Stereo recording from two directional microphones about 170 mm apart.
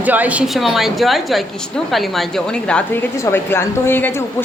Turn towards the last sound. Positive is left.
turn(degrees=10)  # may be behind; listen again after turning